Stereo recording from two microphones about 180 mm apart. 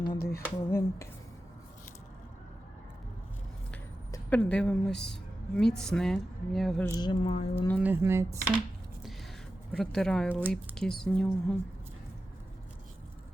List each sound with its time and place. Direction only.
0.2 s a sound: 55° left (ahead or behind)
0.4 s speech: 15° left (ahead or behind)
4.1 s a woman's voice: 10° left (ahead or behind)
6.8 s speech: 20° left (ahead or behind)
7.8 s speech: 10° right (ahead or behind)
9.7 s a woman's voice: 5° left (ahead or behind)